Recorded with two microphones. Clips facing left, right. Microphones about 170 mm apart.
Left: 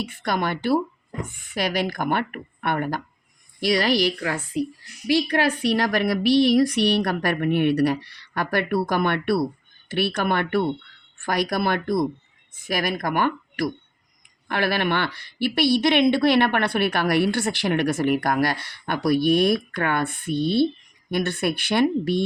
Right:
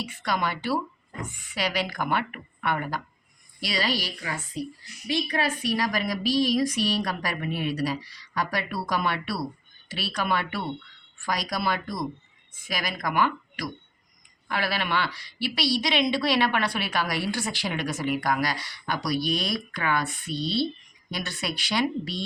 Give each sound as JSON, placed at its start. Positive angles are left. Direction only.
{"t": 0.0, "sound": "a woman's voice", "side_deg": 55}
{"t": 5.0, "sound": "a woman's voice", "side_deg": 75}